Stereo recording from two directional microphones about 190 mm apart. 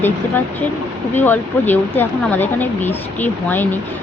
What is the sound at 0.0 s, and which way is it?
Speech, 10° left (ahead or behind).